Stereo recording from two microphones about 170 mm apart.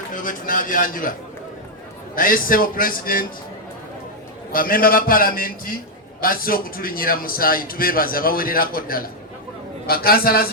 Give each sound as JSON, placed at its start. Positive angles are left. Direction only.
{"t": 0.1, "sound": "a man's voice", "side_deg": 50}
{"t": 2.1, "sound": "a man's voice", "side_deg": 55}
{"t": 4.5, "sound": "a man's voice", "side_deg": 55}